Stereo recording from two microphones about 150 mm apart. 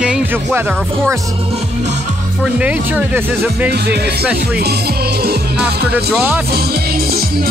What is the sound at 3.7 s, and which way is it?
Music, 90° right.